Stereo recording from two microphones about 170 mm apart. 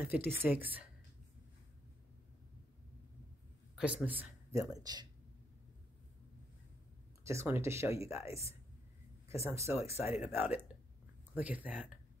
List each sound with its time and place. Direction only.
0.0 s speech: 10° right (ahead or behind)
3.7 s speech: 10° right (ahead or behind)
7.2 s speech: 15° right (ahead or behind)